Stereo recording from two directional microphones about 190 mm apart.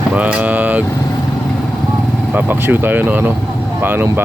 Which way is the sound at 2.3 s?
10° right (ahead or behind).